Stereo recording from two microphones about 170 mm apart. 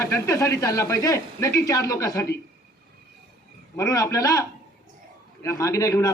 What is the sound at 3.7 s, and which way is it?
A man's voice, 20° left (ahead or behind).